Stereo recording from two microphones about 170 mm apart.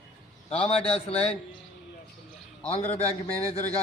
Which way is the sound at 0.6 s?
35° left (ahead or behind).